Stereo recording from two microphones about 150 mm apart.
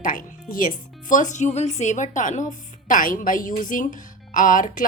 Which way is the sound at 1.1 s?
55° left (ahead or behind).